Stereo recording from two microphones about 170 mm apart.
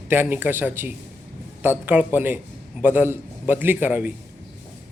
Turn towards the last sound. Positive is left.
turn(degrees=-10)  # may be behind; listen again after turning